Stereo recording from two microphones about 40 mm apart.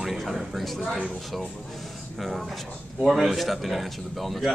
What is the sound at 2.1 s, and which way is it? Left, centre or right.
Speech, centre.